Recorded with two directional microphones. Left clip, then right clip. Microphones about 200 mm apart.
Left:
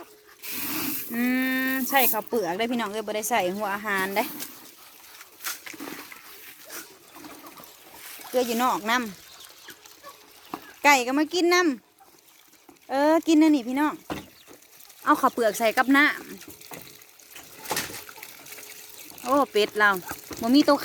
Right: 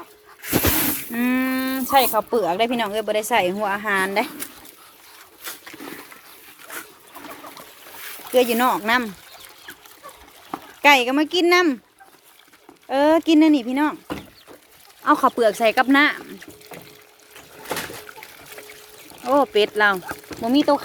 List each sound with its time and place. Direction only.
1.1 s speech: 5° left (ahead or behind)
5.4 s a sound: 25° left (ahead or behind)
8.4 s speech: 10° right (ahead or behind)
10.5 s a sound: 15° right (ahead or behind)
10.8 s speech: centre (ahead or behind)
12.9 s speech: centre (ahead or behind)
15.0 s speech: centre (ahead or behind)
18.2 s water: centre (ahead or behind)
19.2 s speech: centre (ahead or behind)
20.5 s speech: 20° left (ahead or behind)